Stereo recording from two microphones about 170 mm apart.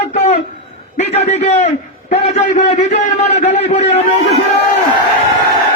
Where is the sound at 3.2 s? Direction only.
40° left (ahead or behind).